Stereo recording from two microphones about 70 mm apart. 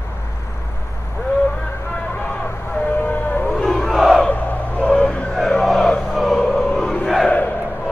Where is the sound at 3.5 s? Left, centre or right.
Centre.